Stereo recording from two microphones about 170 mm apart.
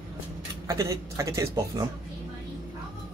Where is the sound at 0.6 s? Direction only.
15° right (ahead or behind).